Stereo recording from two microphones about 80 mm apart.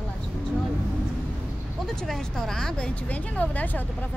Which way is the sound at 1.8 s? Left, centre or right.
Centre.